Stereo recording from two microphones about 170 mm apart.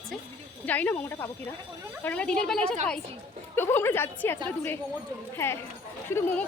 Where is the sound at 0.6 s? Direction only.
10° left (ahead or behind).